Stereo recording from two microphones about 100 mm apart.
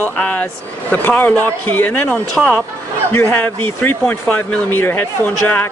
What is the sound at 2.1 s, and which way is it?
Speech, 5° left (ahead or behind).